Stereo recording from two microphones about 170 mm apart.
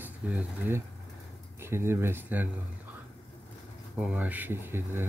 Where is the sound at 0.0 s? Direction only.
5° right (ahead or behind).